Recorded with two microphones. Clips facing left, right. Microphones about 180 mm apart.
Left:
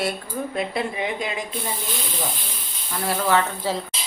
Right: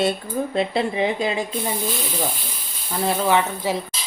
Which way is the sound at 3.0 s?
20° right (ahead or behind).